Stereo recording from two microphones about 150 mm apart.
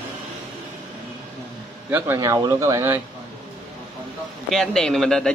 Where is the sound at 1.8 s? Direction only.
15° right (ahead or behind).